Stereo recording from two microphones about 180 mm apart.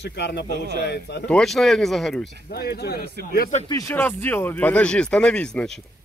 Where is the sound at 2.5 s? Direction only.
60° left (ahead or behind).